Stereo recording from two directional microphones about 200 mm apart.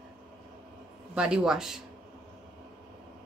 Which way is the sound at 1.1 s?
5° right (ahead or behind).